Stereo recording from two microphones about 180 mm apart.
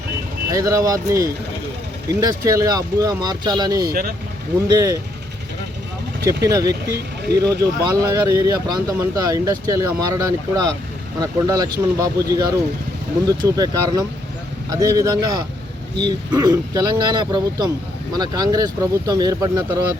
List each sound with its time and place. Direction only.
0.5 s speech: 20° right (ahead or behind)
6.2 s speech: 20° right (ahead or behind)
6.8 s speech: 65° right (ahead or behind)
7.6 s speech: 15° right (ahead or behind)